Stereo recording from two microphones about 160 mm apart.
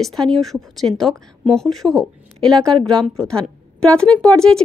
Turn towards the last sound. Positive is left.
turn(degrees=5)  # may be behind; listen again after turning